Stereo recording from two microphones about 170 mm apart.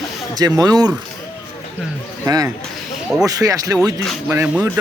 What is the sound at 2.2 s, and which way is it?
Speech, 20° right (ahead or behind).